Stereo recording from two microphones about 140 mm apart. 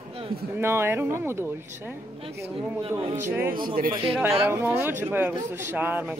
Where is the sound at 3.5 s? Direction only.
90° right.